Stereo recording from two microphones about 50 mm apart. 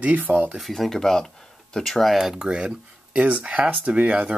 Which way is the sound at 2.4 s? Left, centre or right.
Centre.